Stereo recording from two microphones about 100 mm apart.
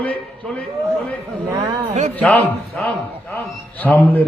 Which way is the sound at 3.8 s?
15° left (ahead or behind).